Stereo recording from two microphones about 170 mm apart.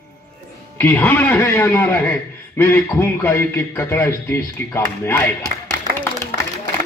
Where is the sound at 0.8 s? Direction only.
15° left (ahead or behind).